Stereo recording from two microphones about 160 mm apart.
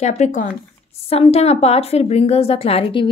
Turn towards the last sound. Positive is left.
turn(degrees=35)  # may be behind; listen again after turning